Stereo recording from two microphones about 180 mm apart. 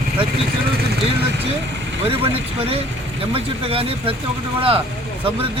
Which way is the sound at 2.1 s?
30° right (ahead or behind).